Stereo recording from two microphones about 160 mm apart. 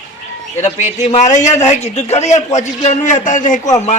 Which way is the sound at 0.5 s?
45° left (ahead or behind).